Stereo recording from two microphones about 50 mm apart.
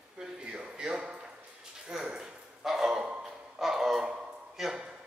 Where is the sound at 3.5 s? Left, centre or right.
Centre.